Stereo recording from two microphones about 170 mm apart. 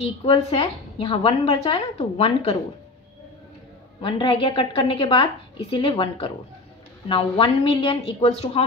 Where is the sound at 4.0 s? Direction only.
30° left (ahead or behind).